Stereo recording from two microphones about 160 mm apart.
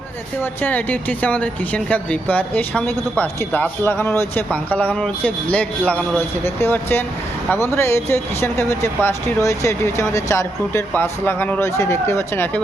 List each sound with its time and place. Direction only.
0.6 s speech: 10° left (ahead or behind)